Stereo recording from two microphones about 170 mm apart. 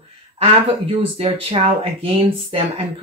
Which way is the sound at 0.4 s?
30° right (ahead or behind).